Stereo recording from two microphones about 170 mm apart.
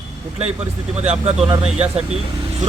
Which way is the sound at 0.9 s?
35° right (ahead or behind).